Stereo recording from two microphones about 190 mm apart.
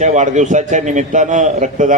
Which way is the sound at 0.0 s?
40° right (ahead or behind).